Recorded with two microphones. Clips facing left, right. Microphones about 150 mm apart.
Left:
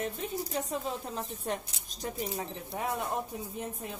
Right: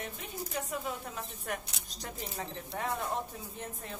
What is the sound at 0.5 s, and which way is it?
Speech, 25° left (ahead or behind).